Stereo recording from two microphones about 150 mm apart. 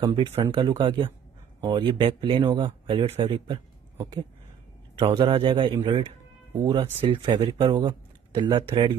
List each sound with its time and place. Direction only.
0.0 s speech: 35° right (ahead or behind)
4.9 s speech: 35° right (ahead or behind)
5.7 s speech: 15° right (ahead or behind)
6.7 s speech: 35° right (ahead or behind)